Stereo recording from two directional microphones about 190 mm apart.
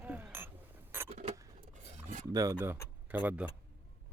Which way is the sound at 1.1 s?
35° right (ahead or behind).